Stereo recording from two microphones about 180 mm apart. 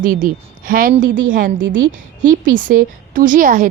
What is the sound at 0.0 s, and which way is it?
A woman's voice, 50° right (ahead or behind).